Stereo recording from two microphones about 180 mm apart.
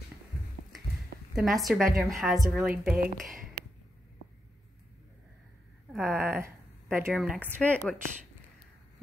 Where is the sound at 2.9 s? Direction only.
50° right (ahead or behind).